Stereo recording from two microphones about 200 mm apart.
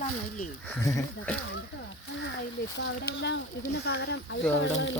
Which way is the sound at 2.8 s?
60° left (ahead or behind).